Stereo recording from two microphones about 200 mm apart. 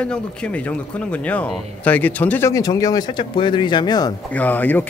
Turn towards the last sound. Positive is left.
turn(degrees=10)  # may be behind; listen again after turning